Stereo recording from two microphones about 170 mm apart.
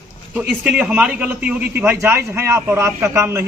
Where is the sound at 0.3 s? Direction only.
5° right (ahead or behind).